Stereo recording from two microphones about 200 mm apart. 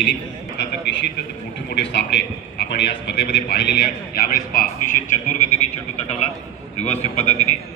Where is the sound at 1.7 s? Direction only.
60° left (ahead or behind).